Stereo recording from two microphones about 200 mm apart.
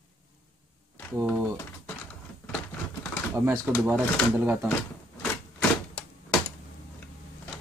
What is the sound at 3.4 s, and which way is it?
Speech, 10° right (ahead or behind).